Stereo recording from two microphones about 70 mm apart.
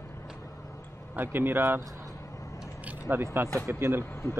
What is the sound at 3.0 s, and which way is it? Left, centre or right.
Speech, right.